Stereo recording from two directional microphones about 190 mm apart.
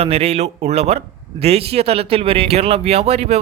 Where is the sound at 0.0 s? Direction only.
30° right (ahead or behind).